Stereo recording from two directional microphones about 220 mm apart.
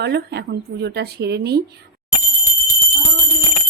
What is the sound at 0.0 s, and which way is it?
A woman's voice, 50° right (ahead or behind).